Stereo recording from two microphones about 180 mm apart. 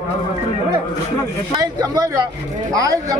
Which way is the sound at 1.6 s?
20° right (ahead or behind).